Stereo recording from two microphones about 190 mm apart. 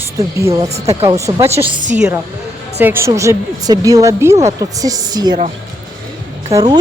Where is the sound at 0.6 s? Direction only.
35° right (ahead or behind).